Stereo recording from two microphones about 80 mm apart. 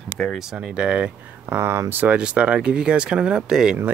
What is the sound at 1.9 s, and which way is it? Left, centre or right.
Speech, centre.